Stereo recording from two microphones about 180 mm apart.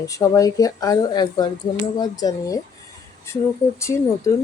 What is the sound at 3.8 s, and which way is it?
Speech, 15° left (ahead or behind).